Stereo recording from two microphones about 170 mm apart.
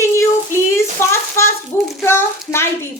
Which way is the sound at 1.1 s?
15° left (ahead or behind).